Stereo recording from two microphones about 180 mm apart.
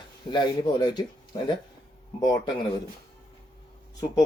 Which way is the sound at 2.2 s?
25° left (ahead or behind).